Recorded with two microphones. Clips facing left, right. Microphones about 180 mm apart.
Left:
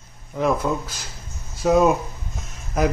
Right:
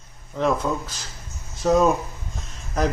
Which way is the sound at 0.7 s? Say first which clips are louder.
Left 1 dB; 5° left (ahead or behind).